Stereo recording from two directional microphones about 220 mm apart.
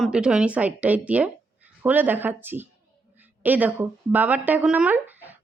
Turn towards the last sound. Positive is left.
turn(degrees=-10)  # may be behind; listen again after turning